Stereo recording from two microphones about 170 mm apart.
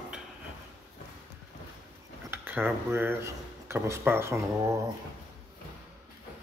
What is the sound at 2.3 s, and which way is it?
Speech, 10° right (ahead or behind).